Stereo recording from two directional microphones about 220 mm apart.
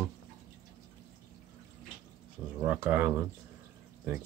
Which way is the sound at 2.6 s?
5° right (ahead or behind).